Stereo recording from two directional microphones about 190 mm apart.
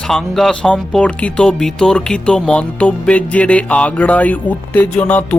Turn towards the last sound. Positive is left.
turn(degrees=5)  # may be behind; listen again after turning